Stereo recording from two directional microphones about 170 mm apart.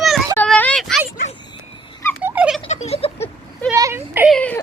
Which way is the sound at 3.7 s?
15° right (ahead or behind).